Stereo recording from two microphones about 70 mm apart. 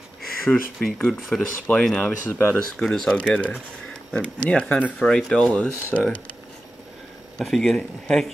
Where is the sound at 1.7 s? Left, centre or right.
Left.